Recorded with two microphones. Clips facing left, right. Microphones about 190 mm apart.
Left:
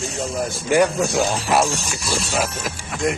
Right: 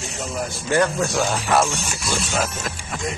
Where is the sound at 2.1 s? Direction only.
Centre (ahead or behind).